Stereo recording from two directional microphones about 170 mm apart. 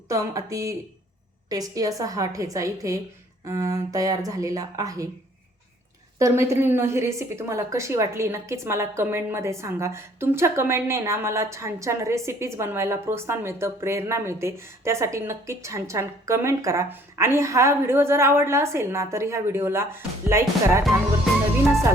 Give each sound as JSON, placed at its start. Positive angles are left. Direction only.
{"t": 0.1, "sound": "speech", "side_deg": -20}
{"t": 6.1, "sound": "a woman's voice", "side_deg": -15}